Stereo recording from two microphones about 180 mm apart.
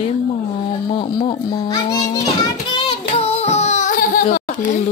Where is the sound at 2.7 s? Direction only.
30° left (ahead or behind).